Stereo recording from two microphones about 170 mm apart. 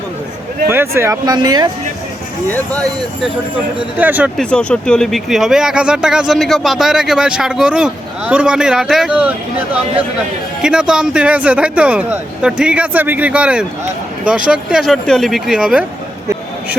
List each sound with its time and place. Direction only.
0.7 s speech: 15° right (ahead or behind)
3.9 s speech: 10° right (ahead or behind)
4.4 s speech: 5° left (ahead or behind)
10.6 s speech: 5° right (ahead or behind)